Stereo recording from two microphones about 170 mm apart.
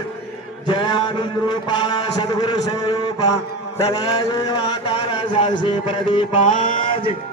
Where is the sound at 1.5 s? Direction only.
25° left (ahead or behind).